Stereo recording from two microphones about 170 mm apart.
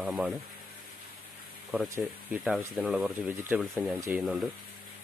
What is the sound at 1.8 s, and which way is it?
Speech, 15° right (ahead or behind).